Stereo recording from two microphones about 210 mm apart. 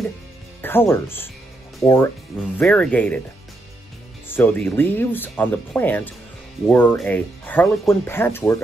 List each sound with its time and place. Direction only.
0.6 s speech: 10° left (ahead or behind)
4.3 s speech: 10° left (ahead or behind)